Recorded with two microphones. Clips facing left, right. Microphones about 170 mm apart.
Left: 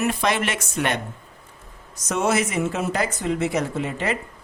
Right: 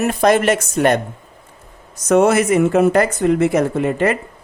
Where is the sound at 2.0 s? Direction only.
60° right (ahead or behind).